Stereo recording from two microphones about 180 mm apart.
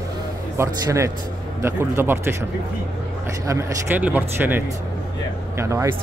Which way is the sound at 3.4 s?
15° right (ahead or behind).